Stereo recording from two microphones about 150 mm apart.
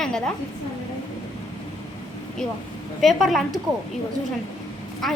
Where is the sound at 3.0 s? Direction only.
Centre (ahead or behind).